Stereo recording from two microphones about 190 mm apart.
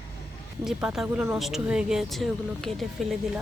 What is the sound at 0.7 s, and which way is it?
Speech, 5° right (ahead or behind).